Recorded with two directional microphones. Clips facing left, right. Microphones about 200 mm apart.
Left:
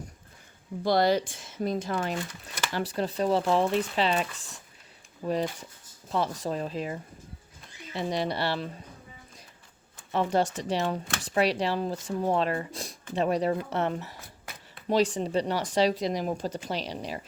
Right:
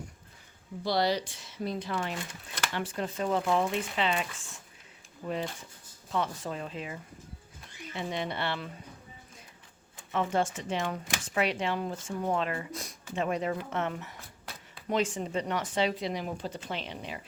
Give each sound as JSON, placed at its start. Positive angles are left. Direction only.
{"t": 0.9, "sound": "speech", "side_deg": 50}
{"t": 6.1, "sound": "speech", "side_deg": 35}
{"t": 10.1, "sound": "speech", "side_deg": 35}